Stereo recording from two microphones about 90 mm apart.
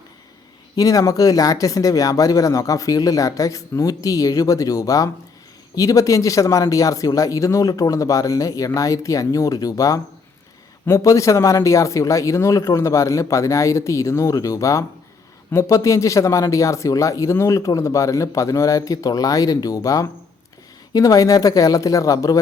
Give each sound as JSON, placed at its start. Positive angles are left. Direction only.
{"t": 0.8, "sound": "speech", "side_deg": 40}